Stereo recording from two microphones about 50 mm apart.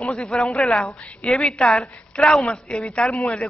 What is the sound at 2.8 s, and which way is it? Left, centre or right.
Speech, left.